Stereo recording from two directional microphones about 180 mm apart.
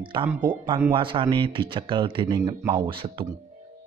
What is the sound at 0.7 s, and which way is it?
Speech, 15° right (ahead or behind).